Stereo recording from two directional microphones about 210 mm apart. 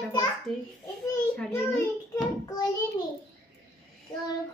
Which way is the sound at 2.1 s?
15° left (ahead or behind).